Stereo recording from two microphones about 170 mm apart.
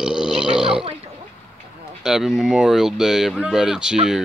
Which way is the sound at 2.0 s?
5° right (ahead or behind).